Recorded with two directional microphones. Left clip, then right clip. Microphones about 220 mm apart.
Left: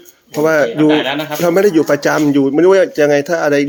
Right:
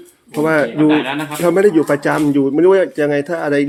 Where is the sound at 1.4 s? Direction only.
15° left (ahead or behind).